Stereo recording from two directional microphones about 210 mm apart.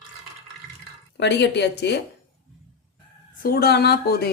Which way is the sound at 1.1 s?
55° left (ahead or behind).